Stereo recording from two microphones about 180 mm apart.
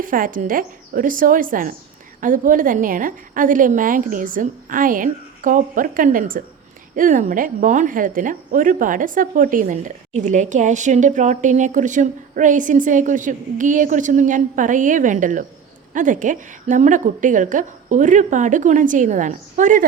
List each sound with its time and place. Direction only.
0.0 s speech: 50° right (ahead or behind)